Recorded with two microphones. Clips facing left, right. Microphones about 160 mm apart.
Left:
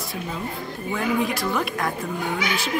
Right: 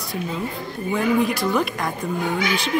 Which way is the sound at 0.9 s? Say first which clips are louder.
Right 4 dB; centre (ahead or behind).